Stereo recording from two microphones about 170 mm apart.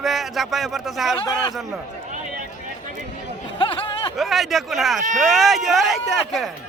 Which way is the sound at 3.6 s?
30° left (ahead or behind).